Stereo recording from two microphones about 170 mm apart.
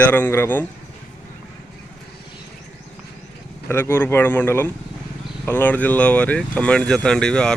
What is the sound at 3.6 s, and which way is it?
Speech, 15° left (ahead or behind).